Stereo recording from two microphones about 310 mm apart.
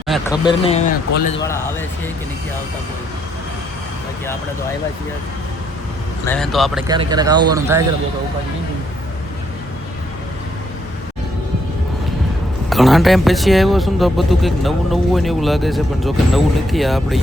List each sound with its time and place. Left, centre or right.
0.4 s speech: centre
6.2 s speech: centre
6.8 s speech: centre
12.7 s speech: centre